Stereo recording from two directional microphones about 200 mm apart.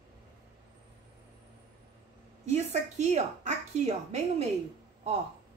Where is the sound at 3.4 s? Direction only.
35° right (ahead or behind).